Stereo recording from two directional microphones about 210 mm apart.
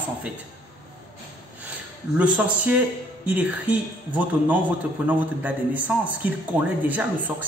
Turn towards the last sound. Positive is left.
turn(degrees=-10)  # may be behind; listen again after turning